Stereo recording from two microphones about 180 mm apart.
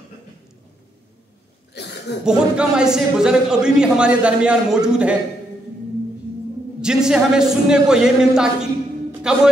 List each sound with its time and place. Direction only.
1.7 s a sound: 70° left (ahead or behind)
2.2 s a man's voice: 5° right (ahead or behind)
6.8 s a man's voice: 5° right (ahead or behind)